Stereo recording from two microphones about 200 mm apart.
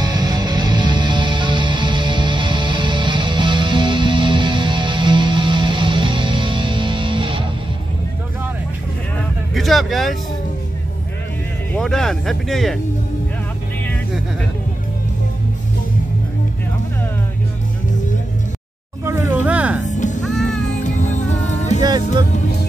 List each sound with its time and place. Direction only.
0.0 s music: 20° right (ahead or behind)
9.5 s vehicle: centre (ahead or behind)
11.7 s speech: centre (ahead or behind)
19.0 s music: 10° right (ahead or behind)
19.9 s music: 35° left (ahead or behind)
20.2 s music: centre (ahead or behind)
20.8 s music: 40° left (ahead or behind)